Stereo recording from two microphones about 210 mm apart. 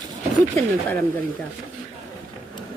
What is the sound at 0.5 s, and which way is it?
Speech, 10° left (ahead or behind).